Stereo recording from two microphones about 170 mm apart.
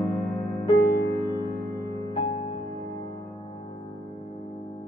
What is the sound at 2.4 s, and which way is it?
Music, 30° left (ahead or behind).